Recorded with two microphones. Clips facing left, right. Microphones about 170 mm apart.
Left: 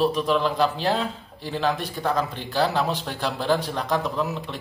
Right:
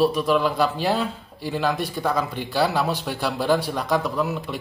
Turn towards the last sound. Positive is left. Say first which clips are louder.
# right 2 dB
turn(degrees=-5)  # may be behind; listen again after turning